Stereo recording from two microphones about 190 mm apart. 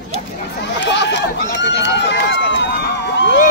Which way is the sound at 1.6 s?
65° left (ahead or behind).